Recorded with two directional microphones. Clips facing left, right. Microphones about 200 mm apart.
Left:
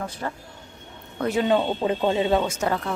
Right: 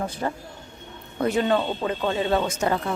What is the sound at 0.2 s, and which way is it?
Speech, 25° right (ahead or behind).